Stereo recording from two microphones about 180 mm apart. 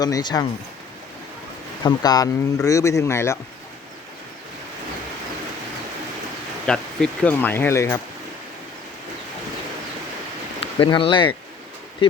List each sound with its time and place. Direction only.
0.0 s speech: 20° left (ahead or behind)
1.8 s speech: 25° left (ahead or behind)
6.7 s speech: 5° left (ahead or behind)
10.8 s speech: 30° left (ahead or behind)